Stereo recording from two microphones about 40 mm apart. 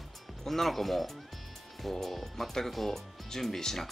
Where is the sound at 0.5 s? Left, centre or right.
Centre.